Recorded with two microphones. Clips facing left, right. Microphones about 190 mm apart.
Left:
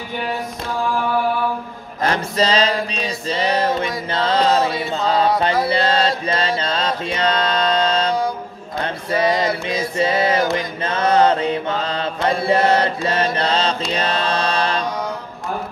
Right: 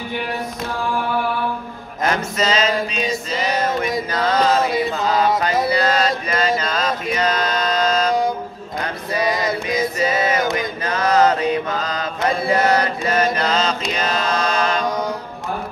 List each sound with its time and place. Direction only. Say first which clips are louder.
2.0 s music: left 1 dB; 30° left (ahead or behind)
5.7 s mantra: even; 30° left (ahead or behind)
8.7 s music: left 2 dB; 30° left (ahead or behind)
10.4 s chant: left 1 dB; 20° right (ahead or behind)
10.8 s mantra: left 1 dB; 25° left (ahead or behind)
13.9 s music: even; 30° left (ahead or behind)